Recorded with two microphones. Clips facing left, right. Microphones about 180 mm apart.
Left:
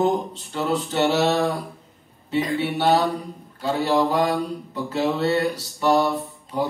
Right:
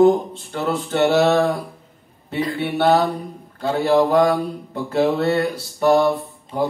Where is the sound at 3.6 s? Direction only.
50° right (ahead or behind).